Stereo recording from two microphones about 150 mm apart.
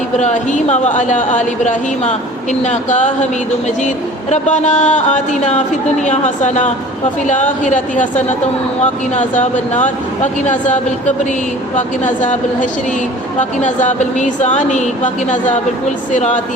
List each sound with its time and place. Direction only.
0.2 s speech: 50° left (ahead or behind)
12.0 s speech: 55° left (ahead or behind)
13.7 s speech: 55° left (ahead or behind)